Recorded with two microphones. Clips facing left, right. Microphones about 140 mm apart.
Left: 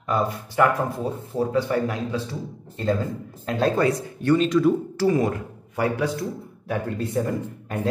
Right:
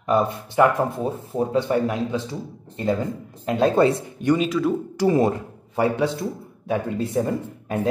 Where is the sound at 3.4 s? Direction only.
20° right (ahead or behind).